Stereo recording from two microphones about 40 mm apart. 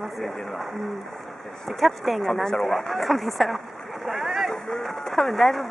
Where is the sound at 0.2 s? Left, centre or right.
Centre.